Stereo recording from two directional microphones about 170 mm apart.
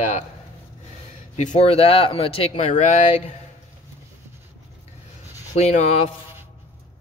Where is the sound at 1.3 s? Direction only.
40° left (ahead or behind).